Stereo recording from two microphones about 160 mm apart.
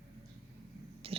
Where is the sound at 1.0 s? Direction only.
35° right (ahead or behind).